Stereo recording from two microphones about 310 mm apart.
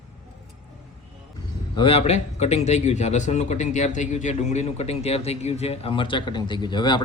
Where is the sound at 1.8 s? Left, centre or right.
Centre.